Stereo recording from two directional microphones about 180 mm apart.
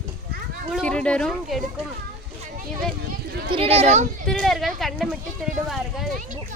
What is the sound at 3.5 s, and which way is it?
Speech, 35° right (ahead or behind).